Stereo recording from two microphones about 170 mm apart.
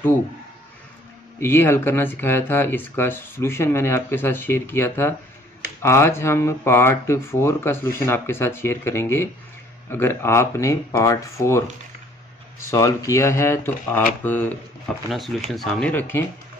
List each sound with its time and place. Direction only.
1.4 s speech: 15° left (ahead or behind)
12.6 s speech: 20° left (ahead or behind)
15.5 s speech: 5° left (ahead or behind)